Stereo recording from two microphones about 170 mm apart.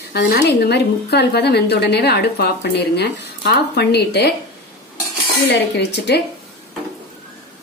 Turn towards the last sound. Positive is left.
turn(degrees=85)